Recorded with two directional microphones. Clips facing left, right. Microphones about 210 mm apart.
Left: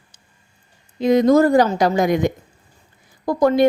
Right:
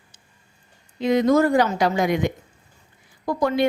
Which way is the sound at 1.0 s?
40° left (ahead or behind).